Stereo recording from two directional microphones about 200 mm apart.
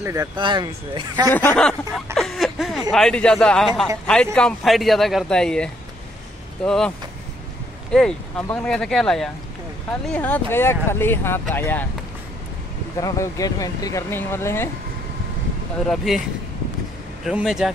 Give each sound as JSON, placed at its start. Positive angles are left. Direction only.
{"t": 0.0, "sound": "speech", "side_deg": -15}
{"t": 1.3, "sound": "speech", "side_deg": 10}
{"t": 2.1, "sound": "a sound", "side_deg": 0}
{"t": 2.9, "sound": "speech", "side_deg": 5}
{"t": 7.9, "sound": "speech", "side_deg": 5}
{"t": 13.0, "sound": "speech", "side_deg": 15}
{"t": 16.1, "sound": "speech", "side_deg": 0}